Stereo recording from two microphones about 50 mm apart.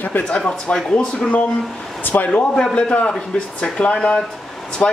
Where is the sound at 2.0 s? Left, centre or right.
Left.